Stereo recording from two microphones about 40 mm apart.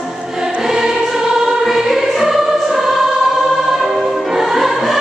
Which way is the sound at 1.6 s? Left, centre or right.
Centre.